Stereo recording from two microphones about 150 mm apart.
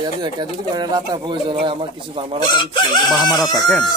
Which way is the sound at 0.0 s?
30° right (ahead or behind).